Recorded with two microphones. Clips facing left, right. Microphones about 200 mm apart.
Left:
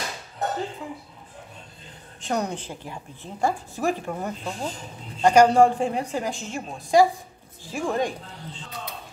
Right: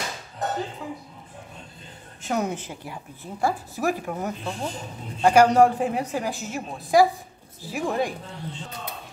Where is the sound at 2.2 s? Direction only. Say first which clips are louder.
Right 1 dB; 5° right (ahead or behind).